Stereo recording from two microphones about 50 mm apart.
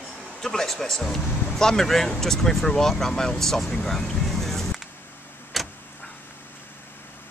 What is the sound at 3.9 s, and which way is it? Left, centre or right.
Vehicle, centre.